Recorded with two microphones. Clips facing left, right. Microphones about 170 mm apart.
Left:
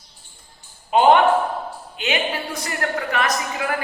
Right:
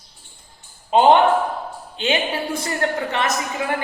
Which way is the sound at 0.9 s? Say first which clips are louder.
Right 1 dB; 30° right (ahead or behind).